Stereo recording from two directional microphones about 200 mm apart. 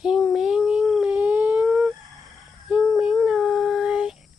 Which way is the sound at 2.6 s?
Centre (ahead or behind).